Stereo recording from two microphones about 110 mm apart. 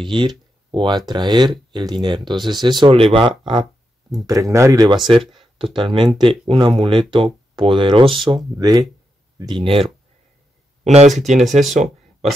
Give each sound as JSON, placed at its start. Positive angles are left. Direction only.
{"t": 0.1, "sound": "speech", "side_deg": -45}
{"t": 4.3, "sound": "speech", "side_deg": -30}
{"t": 4.8, "sound": "speech", "side_deg": -45}
{"t": 8.5, "sound": "speech", "side_deg": -35}
{"t": 9.6, "sound": "speech", "side_deg": -55}
{"t": 10.8, "sound": "speech", "side_deg": -90}
{"t": 11.7, "sound": "a sound", "side_deg": -90}